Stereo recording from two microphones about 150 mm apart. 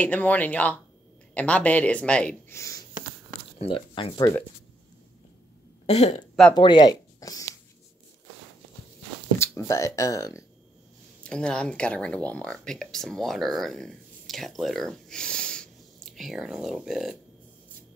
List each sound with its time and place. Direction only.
0.0 s speech: 10° left (ahead or behind)
2.5 s speech: 20° left (ahead or behind)
3.6 s speech: 35° left (ahead or behind)
5.9 s speech: 45° left (ahead or behind)
6.5 s speech: 30° left (ahead or behind)
9.4 s speech: 20° left (ahead or behind)
11.2 s speech: 5° left (ahead or behind)